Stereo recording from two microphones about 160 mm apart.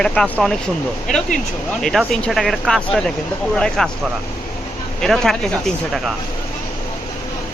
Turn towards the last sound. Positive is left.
turn(degrees=0)  # may be behind; listen again after turning